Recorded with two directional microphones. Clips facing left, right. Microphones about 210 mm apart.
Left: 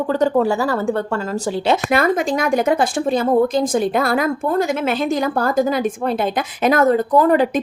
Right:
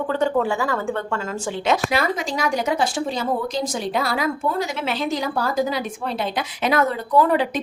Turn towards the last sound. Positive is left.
turn(degrees=45)  # may be behind; listen again after turning